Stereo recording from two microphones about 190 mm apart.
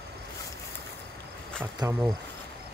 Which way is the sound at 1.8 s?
15° right (ahead or behind).